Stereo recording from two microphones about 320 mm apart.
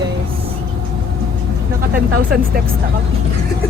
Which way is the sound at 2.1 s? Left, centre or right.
Right.